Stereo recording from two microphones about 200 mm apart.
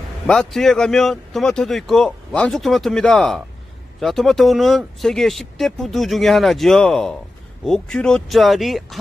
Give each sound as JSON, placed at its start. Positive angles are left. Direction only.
{"t": 0.3, "sound": "speech", "side_deg": 0}